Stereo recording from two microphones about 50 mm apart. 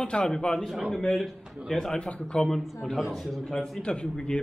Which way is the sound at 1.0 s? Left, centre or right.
Centre.